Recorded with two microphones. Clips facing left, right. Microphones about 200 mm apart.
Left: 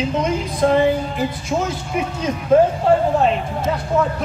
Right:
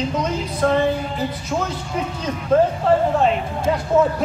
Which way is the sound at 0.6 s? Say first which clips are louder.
Left 2 dB; 20° left (ahead or behind).